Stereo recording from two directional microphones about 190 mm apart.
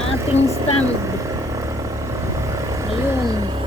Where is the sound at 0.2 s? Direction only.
15° right (ahead or behind).